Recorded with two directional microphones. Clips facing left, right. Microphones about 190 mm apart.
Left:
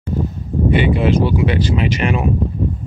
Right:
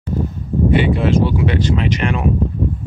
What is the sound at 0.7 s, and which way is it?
Speech, centre (ahead or behind).